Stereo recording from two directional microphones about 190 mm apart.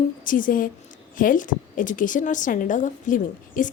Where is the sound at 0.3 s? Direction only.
45° left (ahead or behind).